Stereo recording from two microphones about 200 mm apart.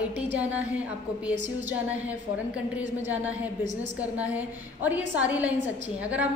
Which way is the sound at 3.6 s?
65° right (ahead or behind).